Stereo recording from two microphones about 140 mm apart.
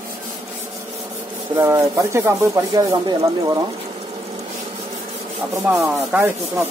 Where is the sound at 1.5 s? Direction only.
20° right (ahead or behind).